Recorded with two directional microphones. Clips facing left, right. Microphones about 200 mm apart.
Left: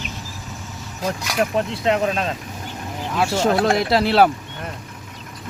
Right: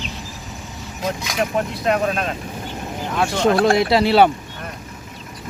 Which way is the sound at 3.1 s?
5° left (ahead or behind).